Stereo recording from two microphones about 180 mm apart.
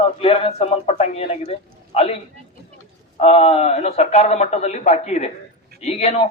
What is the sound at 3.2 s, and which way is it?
Speech, 35° left (ahead or behind).